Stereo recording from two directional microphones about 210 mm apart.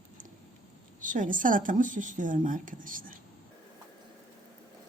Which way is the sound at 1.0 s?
40° right (ahead or behind).